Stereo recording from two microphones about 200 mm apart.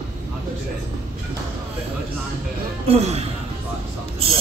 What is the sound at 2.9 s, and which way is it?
Speech, 30° right (ahead or behind).